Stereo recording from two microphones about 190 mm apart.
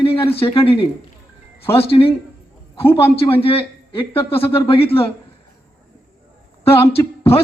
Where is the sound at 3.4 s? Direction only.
30° left (ahead or behind).